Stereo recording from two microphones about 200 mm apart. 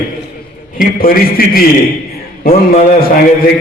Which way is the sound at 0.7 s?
45° left (ahead or behind).